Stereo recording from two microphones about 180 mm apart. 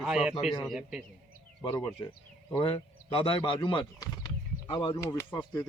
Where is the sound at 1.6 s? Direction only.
25° left (ahead or behind).